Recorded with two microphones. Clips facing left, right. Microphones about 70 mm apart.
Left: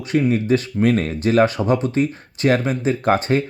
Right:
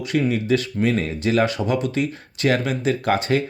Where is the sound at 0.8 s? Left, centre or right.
Left.